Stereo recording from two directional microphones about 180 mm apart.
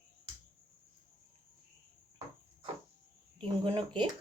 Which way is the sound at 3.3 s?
30° right (ahead or behind).